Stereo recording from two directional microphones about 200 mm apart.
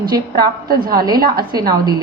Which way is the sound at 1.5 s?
20° right (ahead or behind).